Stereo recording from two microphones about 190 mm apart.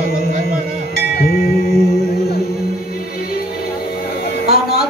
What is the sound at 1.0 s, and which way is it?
Music, 50° left (ahead or behind).